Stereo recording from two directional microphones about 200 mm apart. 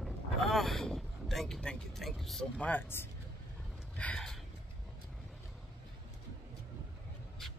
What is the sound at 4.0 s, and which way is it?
Gasp, 5° left (ahead or behind).